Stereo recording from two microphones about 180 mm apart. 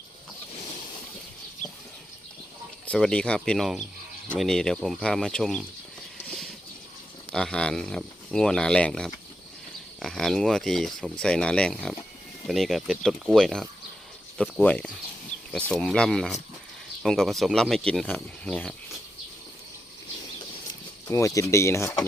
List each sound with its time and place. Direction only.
2.8 s speech: 5° left (ahead or behind)
7.3 s speech: 5° left (ahead or behind)
21.1 s speech: 15° left (ahead or behind)